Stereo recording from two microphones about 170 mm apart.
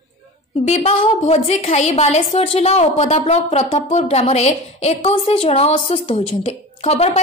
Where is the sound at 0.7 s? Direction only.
40° left (ahead or behind).